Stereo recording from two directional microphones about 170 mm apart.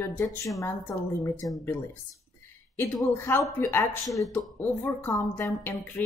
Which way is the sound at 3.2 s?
15° left (ahead or behind).